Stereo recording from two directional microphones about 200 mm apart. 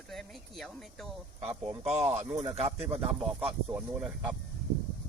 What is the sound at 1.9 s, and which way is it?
Speech, 35° right (ahead or behind).